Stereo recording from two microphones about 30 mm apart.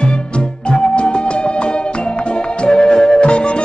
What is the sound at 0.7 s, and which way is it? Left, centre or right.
Music, left.